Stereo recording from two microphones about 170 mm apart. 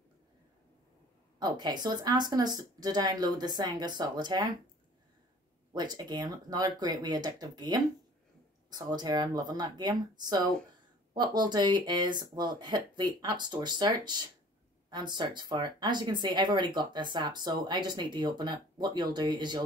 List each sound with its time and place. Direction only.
1.4 s speech: 25° right (ahead or behind)
5.7 s speech: 25° right (ahead or behind)